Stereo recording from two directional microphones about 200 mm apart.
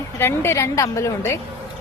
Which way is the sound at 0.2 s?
10° left (ahead or behind).